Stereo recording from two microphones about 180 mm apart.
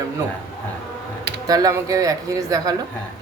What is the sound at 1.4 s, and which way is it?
A woman's voice, 20° right (ahead or behind).